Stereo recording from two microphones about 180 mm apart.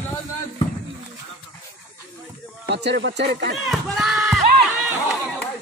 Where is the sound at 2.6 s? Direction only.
70° right (ahead or behind).